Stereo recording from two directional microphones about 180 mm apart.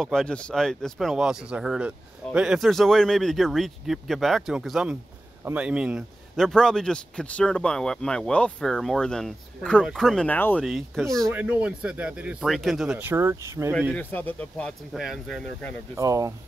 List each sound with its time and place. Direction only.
0.0 s speech: 5° left (ahead or behind)
10.6 s speech: centre (ahead or behind)
13.9 s speech: 10° left (ahead or behind)
16.0 s speech: 20° right (ahead or behind)